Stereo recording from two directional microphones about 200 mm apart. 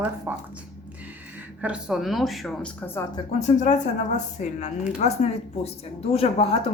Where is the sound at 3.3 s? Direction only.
35° left (ahead or behind).